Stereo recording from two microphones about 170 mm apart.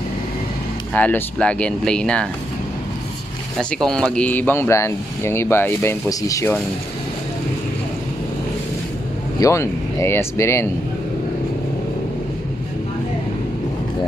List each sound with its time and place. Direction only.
0.9 s speech: 10° left (ahead or behind)
3.5 s speech: 5° left (ahead or behind)
9.4 s speech: 15° left (ahead or behind)